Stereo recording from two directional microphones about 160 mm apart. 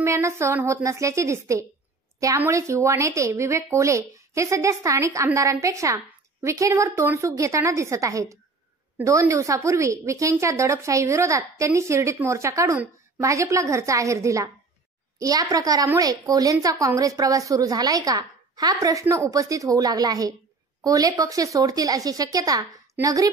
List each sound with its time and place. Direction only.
0.0 s a woman's voice: 15° right (ahead or behind)